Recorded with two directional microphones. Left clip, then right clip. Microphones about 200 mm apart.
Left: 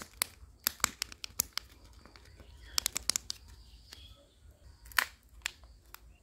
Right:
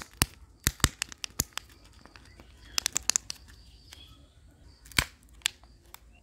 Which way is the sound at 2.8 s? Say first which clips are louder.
Right 4 dB; 15° right (ahead or behind).